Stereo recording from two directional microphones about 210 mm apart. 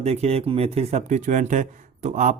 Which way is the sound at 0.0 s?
30° right (ahead or behind).